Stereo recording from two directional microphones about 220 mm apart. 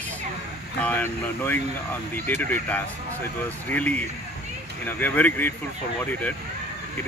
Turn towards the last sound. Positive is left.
turn(degrees=5)  # may be behind; listen again after turning